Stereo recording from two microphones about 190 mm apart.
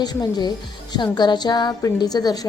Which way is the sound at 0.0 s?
20° left (ahead or behind).